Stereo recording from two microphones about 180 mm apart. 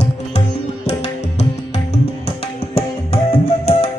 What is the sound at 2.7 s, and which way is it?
Tabla, 35° left (ahead or behind).